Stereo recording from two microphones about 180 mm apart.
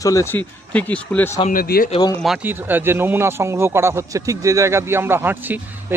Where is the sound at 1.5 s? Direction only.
55° left (ahead or behind).